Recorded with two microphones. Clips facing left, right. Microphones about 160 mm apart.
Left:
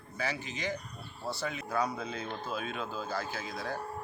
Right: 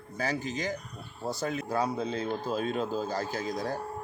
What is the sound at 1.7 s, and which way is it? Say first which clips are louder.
Cattle: right 2 dB; 30° right (ahead or behind).